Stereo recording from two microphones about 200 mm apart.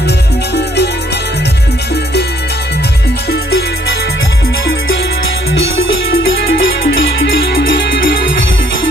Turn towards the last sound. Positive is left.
turn(degrees=55)  # may be behind; listen again after turning